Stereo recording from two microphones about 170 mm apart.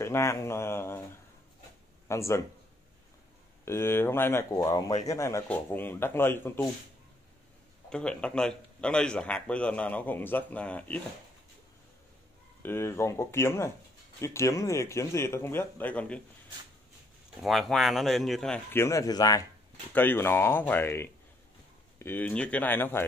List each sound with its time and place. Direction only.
0.0 s speech: 15° left (ahead or behind)
2.0 s speech: 15° left (ahead or behind)
3.6 s a man's voice: 15° left (ahead or behind)
7.9 s a man's voice: 5° left (ahead or behind)
12.6 s a man's voice: 15° left (ahead or behind)
17.4 s speech: centre (ahead or behind); by 19.4 s 20° left (ahead or behind)
19.9 s a man's voice: 10° left (ahead or behind)